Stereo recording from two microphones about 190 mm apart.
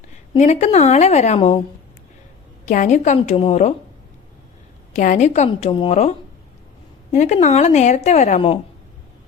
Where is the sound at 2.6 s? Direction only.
40° left (ahead or behind).